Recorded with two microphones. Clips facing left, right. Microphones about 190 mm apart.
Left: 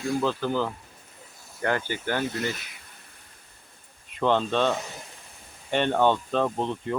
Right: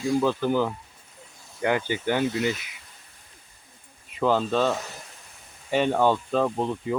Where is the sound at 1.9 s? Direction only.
15° right (ahead or behind).